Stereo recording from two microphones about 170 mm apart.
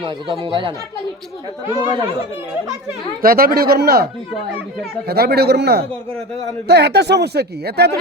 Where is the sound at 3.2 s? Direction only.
60° right (ahead or behind).